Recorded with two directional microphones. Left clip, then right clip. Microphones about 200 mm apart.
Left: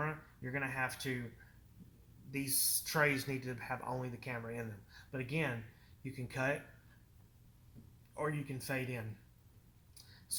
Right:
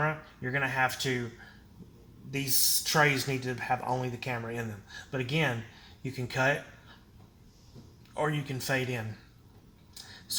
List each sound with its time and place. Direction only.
0.0 s speech: 40° right (ahead or behind)
2.3 s speech: 40° right (ahead or behind)
8.1 s speech: 40° right (ahead or behind)